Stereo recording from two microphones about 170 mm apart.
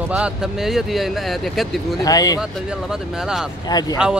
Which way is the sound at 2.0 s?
20° left (ahead or behind).